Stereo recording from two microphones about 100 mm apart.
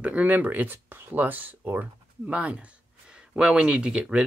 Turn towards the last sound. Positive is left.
turn(degrees=-10)  # may be behind; listen again after turning